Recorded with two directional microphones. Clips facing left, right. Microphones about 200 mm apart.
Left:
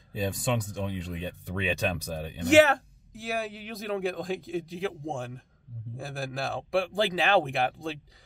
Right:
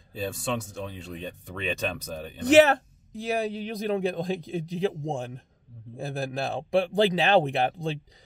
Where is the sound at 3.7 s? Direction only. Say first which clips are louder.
Right 2 dB; 20° right (ahead or behind).